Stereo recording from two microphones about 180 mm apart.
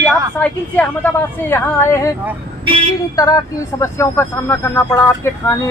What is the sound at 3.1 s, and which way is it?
Speech, 20° left (ahead or behind).